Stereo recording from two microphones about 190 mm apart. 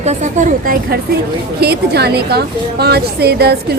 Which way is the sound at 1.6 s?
55° right (ahead or behind).